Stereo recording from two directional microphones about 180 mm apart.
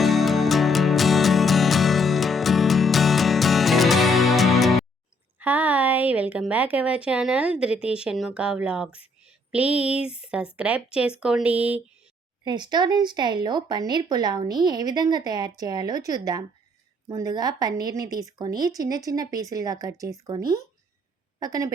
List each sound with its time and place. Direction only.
0.0 s music: centre (ahead or behind)
5.4 s a woman's voice: 10° right (ahead or behind)
12.5 s a woman's voice: 25° right (ahead or behind)